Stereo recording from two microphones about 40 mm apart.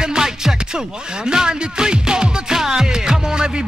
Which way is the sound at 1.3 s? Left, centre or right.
Centre.